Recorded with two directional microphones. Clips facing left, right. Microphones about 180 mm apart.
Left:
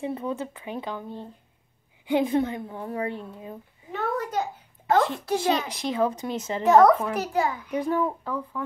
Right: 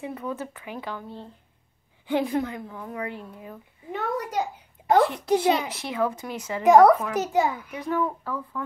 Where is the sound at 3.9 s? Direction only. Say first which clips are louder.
Even; 10° right (ahead or behind).